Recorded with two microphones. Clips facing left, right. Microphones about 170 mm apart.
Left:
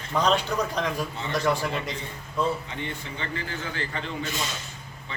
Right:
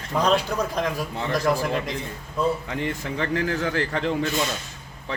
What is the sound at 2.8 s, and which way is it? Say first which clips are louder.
A man's voice: right 7 dB; 80° right.